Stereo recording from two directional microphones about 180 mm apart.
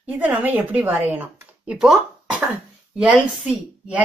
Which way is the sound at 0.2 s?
10° right (ahead or behind).